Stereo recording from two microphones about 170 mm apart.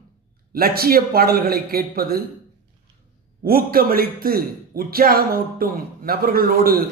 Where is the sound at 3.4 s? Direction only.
60° right (ahead or behind).